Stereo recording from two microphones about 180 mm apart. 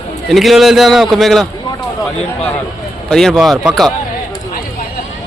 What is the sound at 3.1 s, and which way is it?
Speech, 5° left (ahead or behind).